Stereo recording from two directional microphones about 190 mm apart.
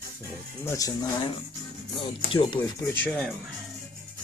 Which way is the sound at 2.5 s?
10° left (ahead or behind).